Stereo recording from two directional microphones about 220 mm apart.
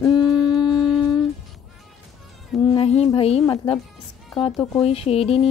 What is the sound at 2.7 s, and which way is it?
Speech, 25° left (ahead or behind).